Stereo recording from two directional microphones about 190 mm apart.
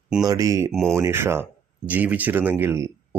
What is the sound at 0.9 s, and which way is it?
Speech, 15° right (ahead or behind).